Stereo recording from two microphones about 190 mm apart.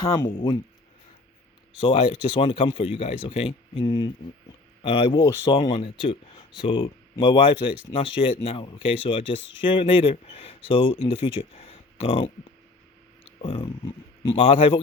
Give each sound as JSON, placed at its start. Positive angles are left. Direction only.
{"t": 1.8, "sound": "speech", "side_deg": 30}
{"t": 13.4, "sound": "speech", "side_deg": 30}